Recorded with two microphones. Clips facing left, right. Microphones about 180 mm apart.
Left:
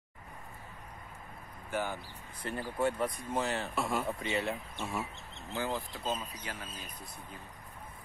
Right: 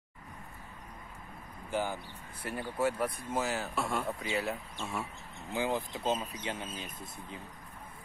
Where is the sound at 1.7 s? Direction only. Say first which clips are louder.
Right 2 dB; 15° right (ahead or behind).